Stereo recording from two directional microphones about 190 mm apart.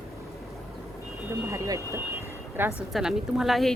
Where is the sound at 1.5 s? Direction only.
15° right (ahead or behind).